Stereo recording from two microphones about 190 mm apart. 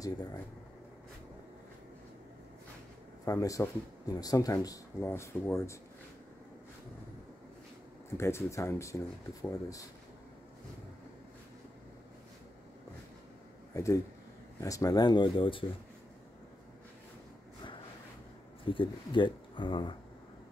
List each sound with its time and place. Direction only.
3.3 s speech: 15° left (ahead or behind)
8.2 s speech: 15° left (ahead or behind)
13.7 s speech: 15° left (ahead or behind)
18.7 s speech: 25° left (ahead or behind)